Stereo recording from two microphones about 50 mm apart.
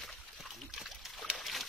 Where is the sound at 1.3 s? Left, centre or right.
Centre.